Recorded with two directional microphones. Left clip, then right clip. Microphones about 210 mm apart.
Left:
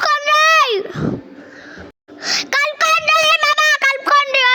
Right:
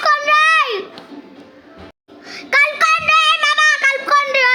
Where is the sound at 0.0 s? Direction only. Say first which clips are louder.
Even; 45° left (ahead or behind).